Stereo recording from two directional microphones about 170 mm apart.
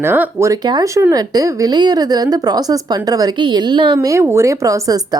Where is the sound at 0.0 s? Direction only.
15° right (ahead or behind).